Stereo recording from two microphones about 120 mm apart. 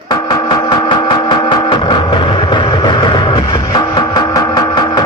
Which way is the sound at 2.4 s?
40° left (ahead or behind).